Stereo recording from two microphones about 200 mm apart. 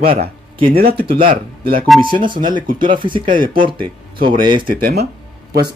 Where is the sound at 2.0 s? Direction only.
25° right (ahead or behind).